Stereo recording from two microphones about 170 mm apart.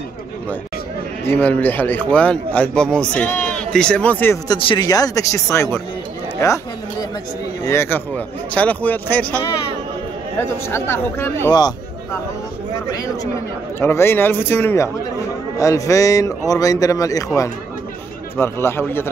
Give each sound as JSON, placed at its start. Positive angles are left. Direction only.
{"t": 1.2, "sound": "a man's voice", "side_deg": 10}
{"t": 4.5, "sound": "a man's voice", "side_deg": 25}
{"t": 6.4, "sound": "chatter", "side_deg": 20}
{"t": 7.6, "sound": "a man's voice", "side_deg": 15}
{"t": 11.5, "sound": "a sound", "side_deg": 25}
{"t": 13.7, "sound": "a man's voice", "side_deg": 15}